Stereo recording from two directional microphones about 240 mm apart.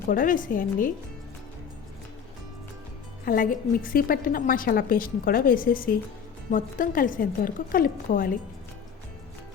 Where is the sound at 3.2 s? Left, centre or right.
Left.